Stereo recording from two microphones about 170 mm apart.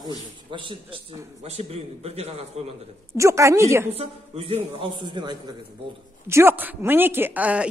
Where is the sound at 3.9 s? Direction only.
35° right (ahead or behind).